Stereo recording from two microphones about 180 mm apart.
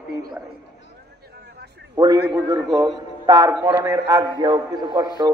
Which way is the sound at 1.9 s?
20° right (ahead or behind).